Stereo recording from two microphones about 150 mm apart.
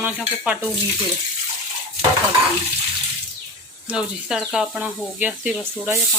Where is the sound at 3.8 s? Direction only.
5° right (ahead or behind).